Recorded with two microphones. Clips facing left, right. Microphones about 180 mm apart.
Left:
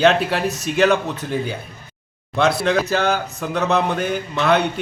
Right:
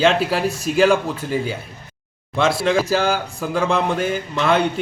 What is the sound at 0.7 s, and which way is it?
Speech, 5° right (ahead or behind).